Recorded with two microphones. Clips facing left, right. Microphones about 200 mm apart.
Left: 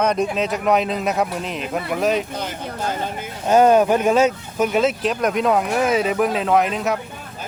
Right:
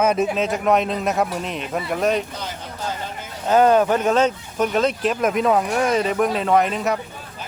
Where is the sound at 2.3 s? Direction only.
55° left (ahead or behind).